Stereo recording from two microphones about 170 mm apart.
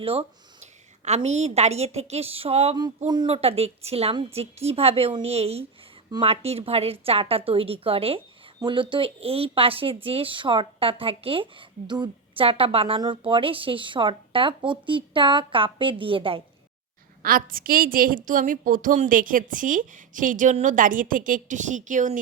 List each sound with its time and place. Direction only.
0.0 s speech: 35° right (ahead or behind)
17.2 s a woman's voice: 55° right (ahead or behind)